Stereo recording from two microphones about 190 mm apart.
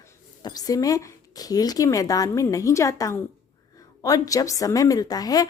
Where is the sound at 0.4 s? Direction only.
20° left (ahead or behind).